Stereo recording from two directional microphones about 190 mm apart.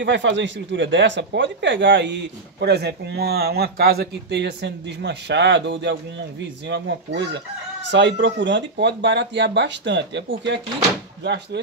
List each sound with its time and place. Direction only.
0.0 s speech: 70° right (ahead or behind)
7.9 s speech: 70° right (ahead or behind)